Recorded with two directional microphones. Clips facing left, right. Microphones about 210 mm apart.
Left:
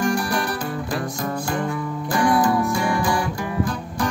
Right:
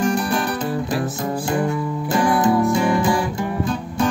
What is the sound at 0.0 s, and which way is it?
Music, 20° right (ahead or behind).